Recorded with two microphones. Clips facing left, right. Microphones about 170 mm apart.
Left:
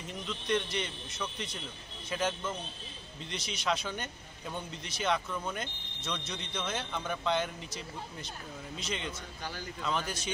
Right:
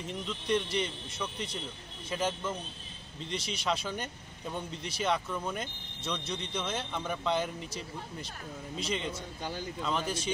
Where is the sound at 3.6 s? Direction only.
5° right (ahead or behind).